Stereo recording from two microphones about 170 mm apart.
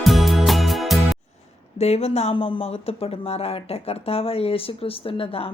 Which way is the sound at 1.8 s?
35° left (ahead or behind).